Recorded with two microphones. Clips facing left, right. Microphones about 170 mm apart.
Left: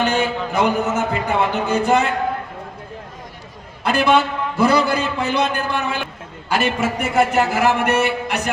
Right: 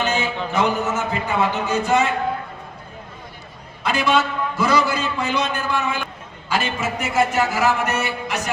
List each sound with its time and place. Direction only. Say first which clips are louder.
0.2 s speech: left 2 dB; 60° left (ahead or behind)
3.8 s a man's voice: left 3 dB; 60° left (ahead or behind)